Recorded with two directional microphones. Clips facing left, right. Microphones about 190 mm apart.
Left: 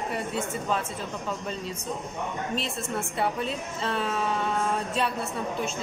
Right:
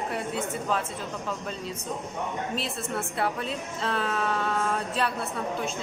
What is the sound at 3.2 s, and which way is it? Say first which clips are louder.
Speech: left 2 dB; centre (ahead or behind).